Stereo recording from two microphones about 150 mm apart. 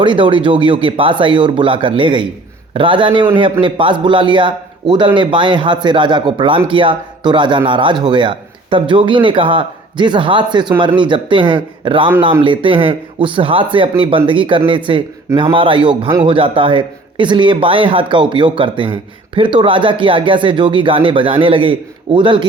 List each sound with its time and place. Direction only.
0.0 s speech: 35° right (ahead or behind)